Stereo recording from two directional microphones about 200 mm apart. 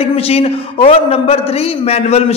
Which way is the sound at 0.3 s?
30° left (ahead or behind).